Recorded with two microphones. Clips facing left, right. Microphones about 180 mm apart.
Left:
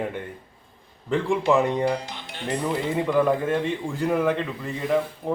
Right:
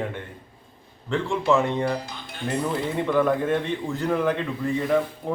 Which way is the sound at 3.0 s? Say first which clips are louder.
Even; 10° left (ahead or behind).